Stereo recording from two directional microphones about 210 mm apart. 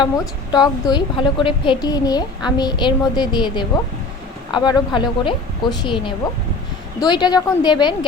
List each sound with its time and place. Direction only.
0.5 s a woman's voice: 20° left (ahead or behind)